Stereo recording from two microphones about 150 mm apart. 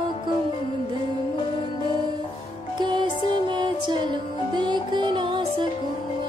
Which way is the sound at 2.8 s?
30° right (ahead or behind).